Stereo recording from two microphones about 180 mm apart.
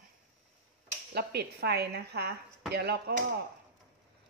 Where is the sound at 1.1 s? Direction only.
65° right (ahead or behind).